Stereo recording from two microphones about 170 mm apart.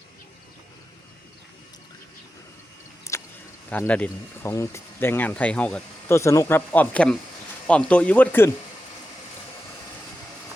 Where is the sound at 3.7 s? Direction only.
10° left (ahead or behind).